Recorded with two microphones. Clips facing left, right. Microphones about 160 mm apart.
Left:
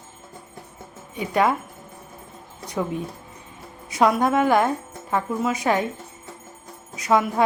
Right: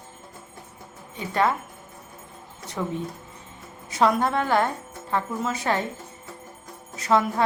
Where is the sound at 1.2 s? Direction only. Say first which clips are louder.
Left 3 dB; 10° left (ahead or behind).